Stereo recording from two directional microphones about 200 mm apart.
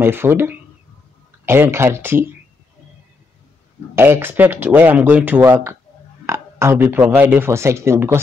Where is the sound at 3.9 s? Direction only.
10° right (ahead or behind).